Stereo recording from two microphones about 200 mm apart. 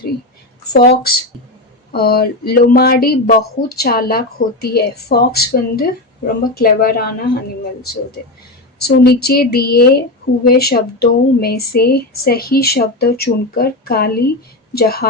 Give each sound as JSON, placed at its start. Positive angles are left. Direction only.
{"t": 0.7, "sound": "a woman's voice", "side_deg": 50}
{"t": 8.8, "sound": "a woman's voice", "side_deg": 50}